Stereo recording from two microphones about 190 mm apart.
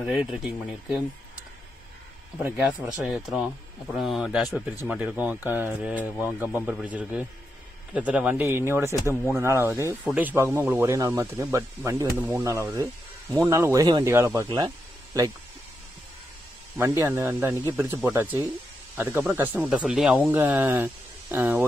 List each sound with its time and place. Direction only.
0.0 s speech: centre (ahead or behind)
2.3 s speech: 5° right (ahead or behind)
16.7 s speech: 10° right (ahead or behind)